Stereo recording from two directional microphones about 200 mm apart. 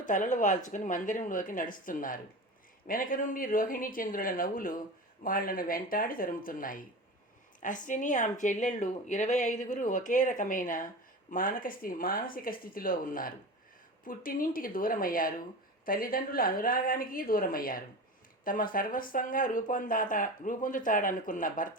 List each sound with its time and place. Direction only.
0.1 s speech: 40° left (ahead or behind)